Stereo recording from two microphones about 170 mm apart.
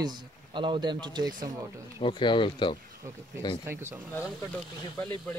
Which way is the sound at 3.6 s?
15° right (ahead or behind).